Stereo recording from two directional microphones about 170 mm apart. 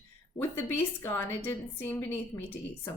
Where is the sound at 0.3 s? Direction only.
10° left (ahead or behind).